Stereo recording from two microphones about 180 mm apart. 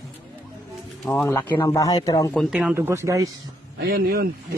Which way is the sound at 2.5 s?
5° right (ahead or behind).